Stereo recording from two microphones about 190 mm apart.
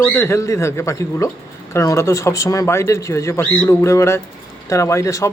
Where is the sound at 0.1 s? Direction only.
10° left (ahead or behind).